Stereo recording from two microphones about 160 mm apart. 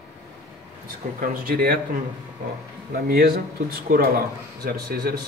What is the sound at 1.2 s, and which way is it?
Speech, 65° right (ahead or behind).